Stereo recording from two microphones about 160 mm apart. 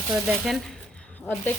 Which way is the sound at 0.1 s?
Centre (ahead or behind).